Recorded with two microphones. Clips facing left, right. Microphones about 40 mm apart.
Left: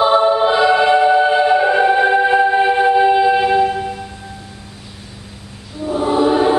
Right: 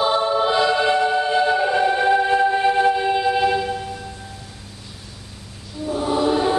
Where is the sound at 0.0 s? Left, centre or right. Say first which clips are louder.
Left 6 dB; left.